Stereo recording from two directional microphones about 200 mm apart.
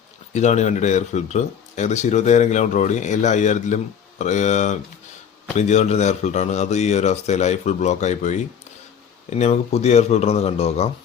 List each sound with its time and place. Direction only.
0.3 s speech: 35° left (ahead or behind)